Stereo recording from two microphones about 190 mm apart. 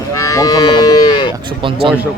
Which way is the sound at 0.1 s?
15° left (ahead or behind).